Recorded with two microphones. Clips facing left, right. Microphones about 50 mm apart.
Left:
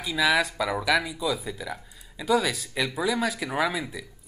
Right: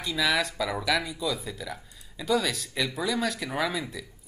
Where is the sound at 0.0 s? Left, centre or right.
Centre.